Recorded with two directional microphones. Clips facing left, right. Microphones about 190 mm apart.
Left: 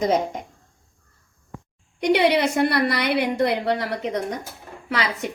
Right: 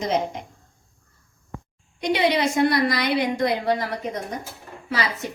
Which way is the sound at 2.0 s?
60° left (ahead or behind).